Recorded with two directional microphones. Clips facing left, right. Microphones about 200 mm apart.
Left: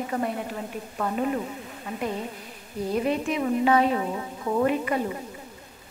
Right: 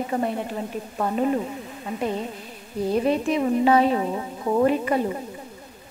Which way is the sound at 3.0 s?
35° right (ahead or behind).